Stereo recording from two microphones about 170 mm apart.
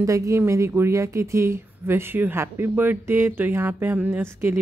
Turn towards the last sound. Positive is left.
turn(degrees=-15)  # may be behind; listen again after turning